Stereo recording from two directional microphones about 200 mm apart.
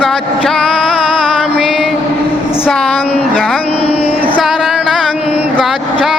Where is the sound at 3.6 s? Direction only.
30° left (ahead or behind).